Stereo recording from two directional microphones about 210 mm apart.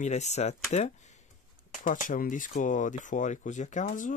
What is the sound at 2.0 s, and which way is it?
Speech, 40° left (ahead or behind).